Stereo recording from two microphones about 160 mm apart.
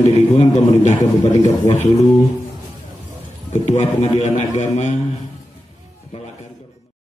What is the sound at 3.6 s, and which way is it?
A man's voice, 45° left (ahead or behind).